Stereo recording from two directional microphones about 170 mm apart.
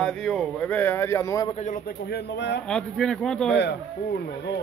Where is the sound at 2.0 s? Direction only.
80° left.